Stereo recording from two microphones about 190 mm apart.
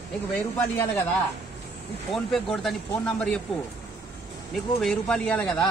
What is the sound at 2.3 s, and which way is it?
Speech, centre (ahead or behind).